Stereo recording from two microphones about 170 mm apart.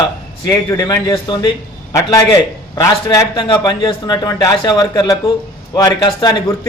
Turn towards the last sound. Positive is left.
turn(degrees=25)  # may be behind; listen again after turning